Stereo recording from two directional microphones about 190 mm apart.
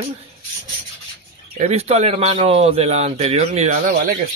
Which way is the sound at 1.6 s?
35° right (ahead or behind).